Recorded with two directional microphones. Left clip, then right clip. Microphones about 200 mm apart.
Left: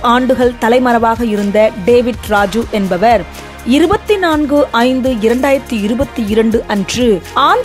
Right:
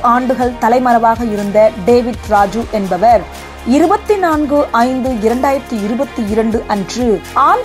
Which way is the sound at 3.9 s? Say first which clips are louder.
Right 1 dB; 40° left (ahead or behind).